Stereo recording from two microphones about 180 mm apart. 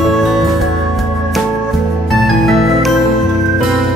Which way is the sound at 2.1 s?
Centre (ahead or behind).